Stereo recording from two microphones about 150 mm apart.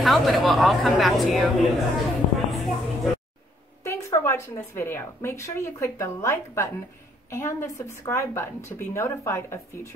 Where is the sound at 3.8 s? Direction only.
20° left (ahead or behind).